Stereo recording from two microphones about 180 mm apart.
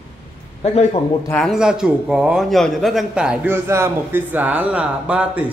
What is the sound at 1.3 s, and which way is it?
A man's voice, centre (ahead or behind).